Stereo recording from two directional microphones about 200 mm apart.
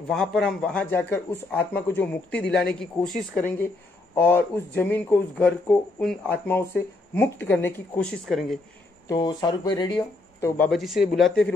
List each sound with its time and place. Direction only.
0.1 s speech: centre (ahead or behind)
8.3 s speech: centre (ahead or behind)
9.0 s speech: 20° left (ahead or behind)
10.6 s speech: centre (ahead or behind)